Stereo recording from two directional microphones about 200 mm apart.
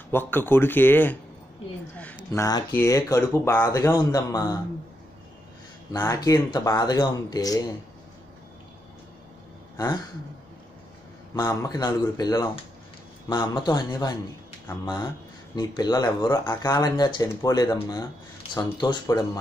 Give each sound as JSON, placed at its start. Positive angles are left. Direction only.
{"t": 0.1, "sound": "speech", "side_deg": 10}
{"t": 5.9, "sound": "speech", "side_deg": 15}
{"t": 11.3, "sound": "speech", "side_deg": 20}
{"t": 15.5, "sound": "speech", "side_deg": 20}